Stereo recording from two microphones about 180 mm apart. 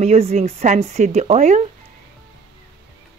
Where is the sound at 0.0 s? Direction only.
35° right (ahead or behind).